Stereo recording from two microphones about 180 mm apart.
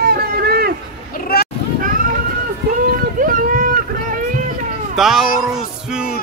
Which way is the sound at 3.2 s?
50° right (ahead or behind).